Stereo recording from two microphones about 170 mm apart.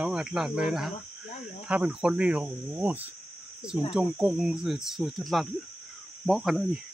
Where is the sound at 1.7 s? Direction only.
5° right (ahead or behind).